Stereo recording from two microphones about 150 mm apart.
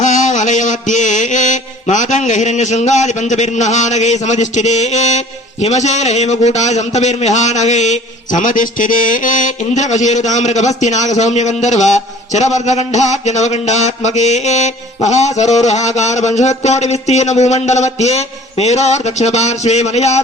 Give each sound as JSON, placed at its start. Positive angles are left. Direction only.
{"t": 0.0, "sound": "mantra", "side_deg": 55}